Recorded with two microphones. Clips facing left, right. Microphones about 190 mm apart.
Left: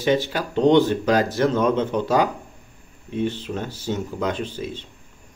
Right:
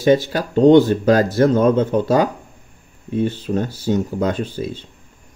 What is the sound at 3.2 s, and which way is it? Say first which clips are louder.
Speech: right 5 dB; 40° right (ahead or behind).